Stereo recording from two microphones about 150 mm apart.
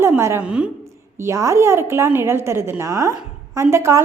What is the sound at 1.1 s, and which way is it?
A woman's voice, 20° right (ahead or behind).